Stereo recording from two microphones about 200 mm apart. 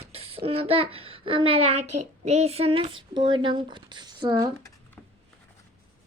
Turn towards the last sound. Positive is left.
turn(degrees=-20)  # may be behind; listen again after turning